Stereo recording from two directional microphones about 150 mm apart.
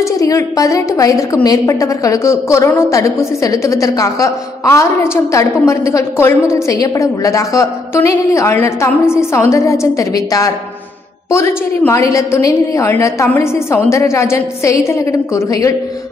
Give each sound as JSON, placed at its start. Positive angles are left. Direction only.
{"t": 0.0, "sound": "a woman's voice", "side_deg": 20}